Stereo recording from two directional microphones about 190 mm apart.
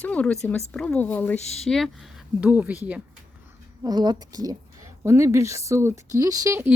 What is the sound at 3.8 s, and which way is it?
Speech, 20° right (ahead or behind).